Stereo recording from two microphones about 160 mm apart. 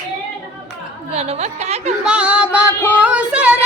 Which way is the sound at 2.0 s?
5° right (ahead or behind).